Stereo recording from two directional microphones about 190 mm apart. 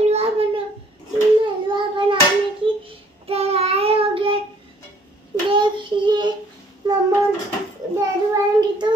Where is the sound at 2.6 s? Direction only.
30° right (ahead or behind).